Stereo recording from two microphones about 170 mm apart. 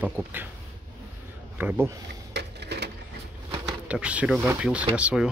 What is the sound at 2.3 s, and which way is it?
Typewriter, 80° right.